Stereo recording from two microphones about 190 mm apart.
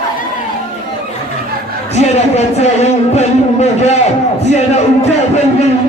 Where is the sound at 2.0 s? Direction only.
35° left (ahead or behind).